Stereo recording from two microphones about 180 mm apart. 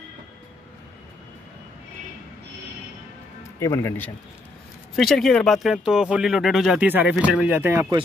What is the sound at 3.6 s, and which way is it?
Speech, 15° left (ahead or behind).